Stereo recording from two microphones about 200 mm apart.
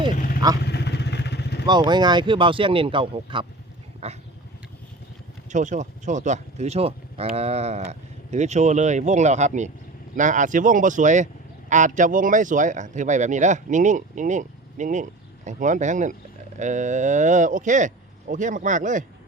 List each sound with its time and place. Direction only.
0.6 s vehicle: 55° left (ahead or behind)
1.6 s speech: 20° right (ahead or behind)
5.5 s speech: 40° right (ahead or behind)